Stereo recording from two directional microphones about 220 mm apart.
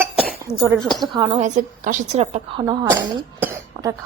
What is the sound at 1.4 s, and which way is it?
A woman's voice, 35° right (ahead or behind).